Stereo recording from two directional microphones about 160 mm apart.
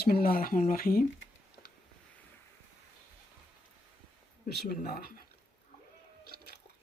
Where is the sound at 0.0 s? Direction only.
70° left (ahead or behind).